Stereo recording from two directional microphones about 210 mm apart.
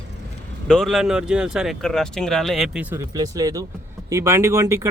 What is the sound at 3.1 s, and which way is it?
Speech, 15° right (ahead or behind).